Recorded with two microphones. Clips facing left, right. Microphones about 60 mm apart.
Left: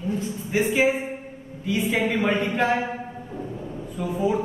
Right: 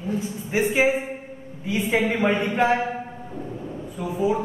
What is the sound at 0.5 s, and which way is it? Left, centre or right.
Speech, right.